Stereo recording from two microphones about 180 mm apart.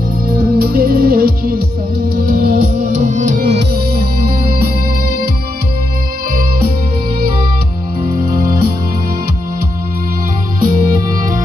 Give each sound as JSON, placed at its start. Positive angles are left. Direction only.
{"t": 0.6, "sound": "music", "side_deg": -55}
{"t": 3.5, "sound": "music", "side_deg": -60}
{"t": 8.0, "sound": "music", "side_deg": -55}
{"t": 10.6, "sound": "music", "side_deg": -50}